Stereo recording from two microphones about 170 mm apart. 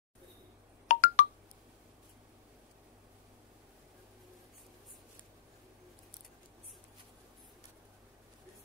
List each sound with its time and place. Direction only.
0.8 s telephone dialing: 50° left (ahead or behind)